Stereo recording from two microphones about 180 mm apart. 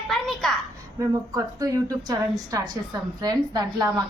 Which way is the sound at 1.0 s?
20° right (ahead or behind).